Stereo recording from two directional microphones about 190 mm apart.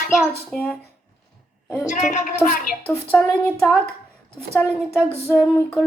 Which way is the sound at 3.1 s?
5° left (ahead or behind).